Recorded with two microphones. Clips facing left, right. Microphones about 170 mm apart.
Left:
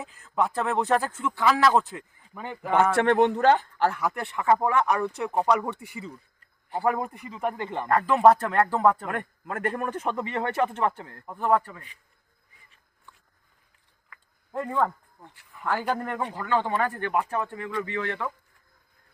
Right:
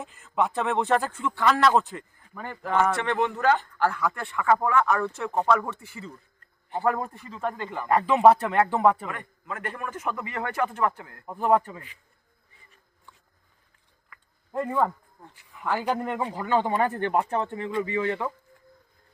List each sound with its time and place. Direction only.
0.0 s a man's voice: centre (ahead or behind)
2.9 s speech: 50° left (ahead or behind); by 3.6 s 30° left (ahead or behind)
3.8 s a man's voice: 20° left (ahead or behind)
7.9 s speech: 10° right (ahead or behind)
9.0 s a man's voice: 50° left (ahead or behind); by 11.2 s 30° left (ahead or behind)
11.3 s speech: 15° right (ahead or behind)
14.1 s a sound: centre (ahead or behind)
15.5 s speech: 5° right (ahead or behind)